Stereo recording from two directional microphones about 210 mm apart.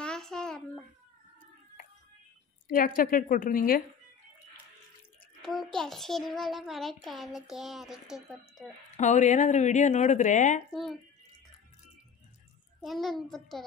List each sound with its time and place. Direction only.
0.0 s a sound: 5° left (ahead or behind)
2.7 s a woman's voice: 40° left (ahead or behind)
5.4 s a child's voice: centre (ahead or behind)
8.9 s a woman's voice: 35° left (ahead or behind)
10.7 s a child's voice: centre (ahead or behind)
12.8 s a child's voice: centre (ahead or behind)